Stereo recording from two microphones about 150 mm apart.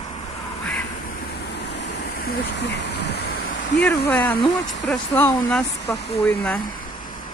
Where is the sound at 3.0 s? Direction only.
90° left.